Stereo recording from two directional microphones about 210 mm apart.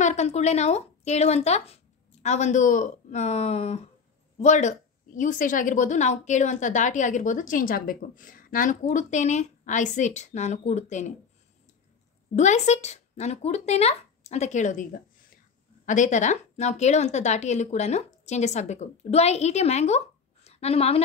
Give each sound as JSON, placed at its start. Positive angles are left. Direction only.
{"t": 0.0, "sound": "a woman's voice", "side_deg": 30}
{"t": 12.4, "sound": "a woman's voice", "side_deg": 35}